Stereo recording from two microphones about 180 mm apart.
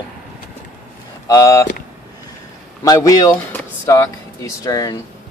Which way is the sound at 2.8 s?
20° left (ahead or behind).